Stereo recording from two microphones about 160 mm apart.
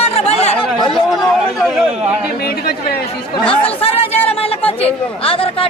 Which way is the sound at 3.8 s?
35° left (ahead or behind).